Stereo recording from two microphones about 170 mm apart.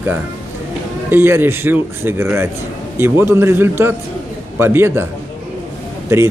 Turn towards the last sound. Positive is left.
turn(degrees=-15)  # may be behind; listen again after turning